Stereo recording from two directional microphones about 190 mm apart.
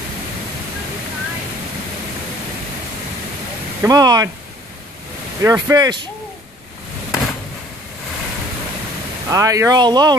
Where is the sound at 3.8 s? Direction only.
20° right (ahead or behind).